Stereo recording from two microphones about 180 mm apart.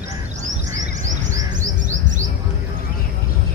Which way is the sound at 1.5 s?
45° right (ahead or behind).